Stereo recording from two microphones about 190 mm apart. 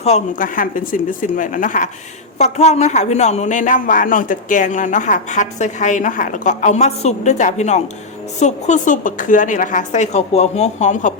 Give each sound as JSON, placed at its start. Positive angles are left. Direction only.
{"t": 0.0, "sound": "a man's voice", "side_deg": 40}